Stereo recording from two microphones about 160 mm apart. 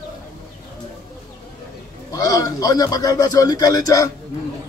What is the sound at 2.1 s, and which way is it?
A man's voice, 25° left (ahead or behind).